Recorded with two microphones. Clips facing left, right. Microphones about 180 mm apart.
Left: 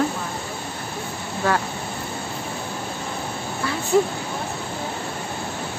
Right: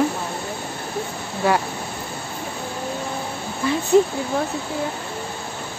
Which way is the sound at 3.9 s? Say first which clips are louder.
Right 3 dB; 20° right (ahead or behind).